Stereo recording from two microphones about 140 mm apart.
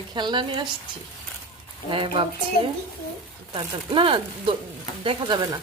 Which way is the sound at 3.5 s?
35° right (ahead or behind).